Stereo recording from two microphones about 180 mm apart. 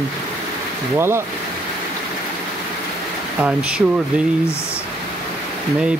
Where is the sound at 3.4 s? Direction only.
5° right (ahead or behind).